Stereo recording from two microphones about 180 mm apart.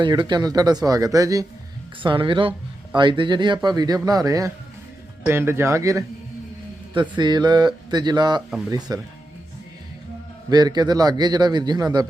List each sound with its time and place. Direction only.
0.0 s a man's voice: 25° right (ahead or behind)
8.4 s speech: 5° right (ahead or behind)
8.9 s a man's voice: 20° right (ahead or behind)
10.5 s a man's voice: 25° right (ahead or behind)